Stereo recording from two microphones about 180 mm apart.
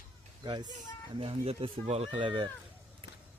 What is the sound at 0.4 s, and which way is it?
Speech, 25° right (ahead or behind).